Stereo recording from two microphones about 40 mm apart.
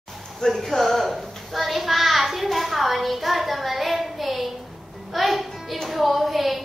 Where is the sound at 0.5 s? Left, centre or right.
Centre.